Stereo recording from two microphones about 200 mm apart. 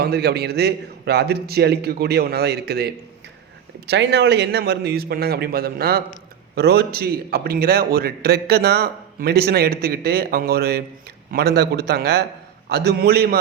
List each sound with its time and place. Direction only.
0.0 s a man's voice: 55° right (ahead or behind)